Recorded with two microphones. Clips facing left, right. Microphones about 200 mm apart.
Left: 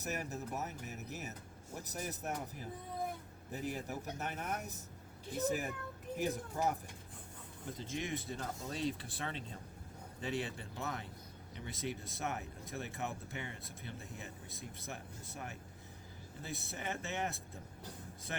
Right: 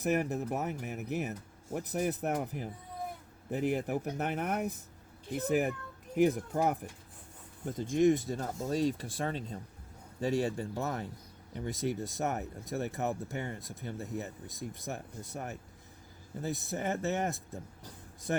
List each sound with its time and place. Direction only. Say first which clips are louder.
0.0 s speech: right 10 dB; 60° right (ahead or behind)
7.8 s speech: right 15 dB; 45° right (ahead or behind)